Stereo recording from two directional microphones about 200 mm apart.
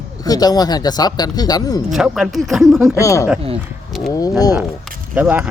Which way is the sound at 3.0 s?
15° left (ahead or behind).